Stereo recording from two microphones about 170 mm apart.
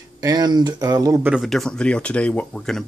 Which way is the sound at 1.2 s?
5° right (ahead or behind).